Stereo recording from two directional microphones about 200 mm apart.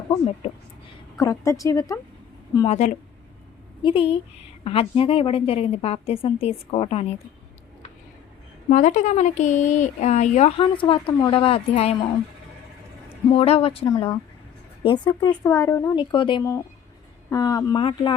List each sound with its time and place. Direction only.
0.1 s a woman's voice: 30° left (ahead or behind)
1.2 s speech: 15° left (ahead or behind)
2.6 s a woman's voice: 35° left (ahead or behind)
8.7 s speech: 40° left (ahead or behind)
13.3 s a woman's voice: 30° left (ahead or behind)